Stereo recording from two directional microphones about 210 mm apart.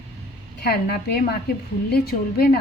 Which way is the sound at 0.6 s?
50° left (ahead or behind).